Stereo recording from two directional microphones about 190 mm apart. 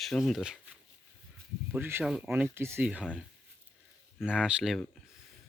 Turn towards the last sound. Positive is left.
turn(degrees=0)  # may be behind; listen again after turning